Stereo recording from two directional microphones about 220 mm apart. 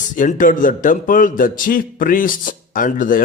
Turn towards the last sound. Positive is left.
turn(degrees=40)  # may be behind; listen again after turning